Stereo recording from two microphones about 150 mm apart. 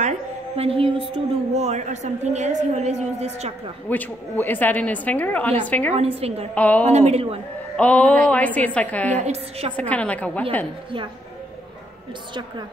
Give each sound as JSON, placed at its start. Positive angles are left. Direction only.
{"t": 0.6, "sound": "a woman's voice", "side_deg": -40}
{"t": 3.9, "sound": "a woman's voice", "side_deg": 10}
{"t": 5.9, "sound": "a woman's voice", "side_deg": -40}
{"t": 6.5, "sound": "a woman's voice", "side_deg": 10}
{"t": 6.9, "sound": "a woman's voice", "side_deg": -45}
{"t": 7.7, "sound": "a woman's voice", "side_deg": 10}
{"t": 9.1, "sound": "a woman's voice", "side_deg": -50}
{"t": 9.8, "sound": "a woman's voice", "side_deg": 10}